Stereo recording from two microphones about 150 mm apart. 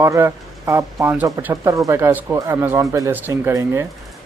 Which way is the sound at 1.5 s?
20° right (ahead or behind).